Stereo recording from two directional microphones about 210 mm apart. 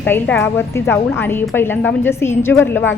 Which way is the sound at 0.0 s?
10° left (ahead or behind).